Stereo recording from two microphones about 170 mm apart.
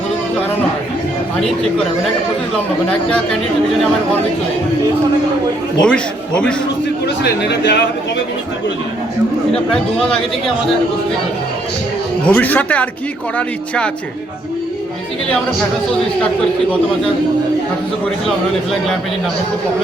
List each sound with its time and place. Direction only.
5.8 s a man's voice: 5° left (ahead or behind)
7.2 s speech: 90° left
9.5 s a man's voice: 5° left (ahead or behind)
12.2 s speech: 10° left (ahead or behind)